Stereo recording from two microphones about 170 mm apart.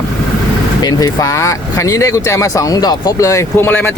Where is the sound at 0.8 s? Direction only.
20° left (ahead or behind).